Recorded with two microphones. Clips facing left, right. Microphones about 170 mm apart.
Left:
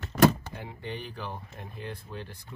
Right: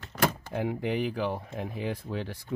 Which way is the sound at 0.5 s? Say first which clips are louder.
Right 10 dB; 90° right.